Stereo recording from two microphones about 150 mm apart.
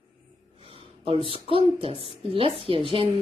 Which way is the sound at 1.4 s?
35° right (ahead or behind).